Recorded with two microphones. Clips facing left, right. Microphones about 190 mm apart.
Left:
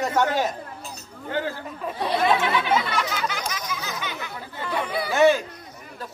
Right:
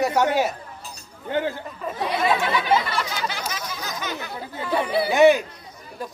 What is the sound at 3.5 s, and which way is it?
Chatter, 35° right (ahead or behind).